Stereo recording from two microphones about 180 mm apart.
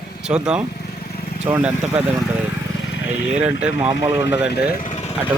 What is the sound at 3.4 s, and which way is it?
Speech, 10° right (ahead or behind).